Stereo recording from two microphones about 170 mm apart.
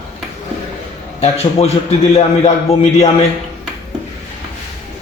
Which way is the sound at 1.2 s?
35° left (ahead or behind).